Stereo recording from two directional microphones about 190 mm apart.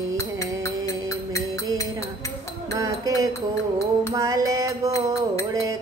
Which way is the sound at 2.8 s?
20° right (ahead or behind).